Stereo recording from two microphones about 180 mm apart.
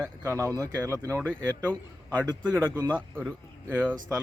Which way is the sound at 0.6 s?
20° right (ahead or behind).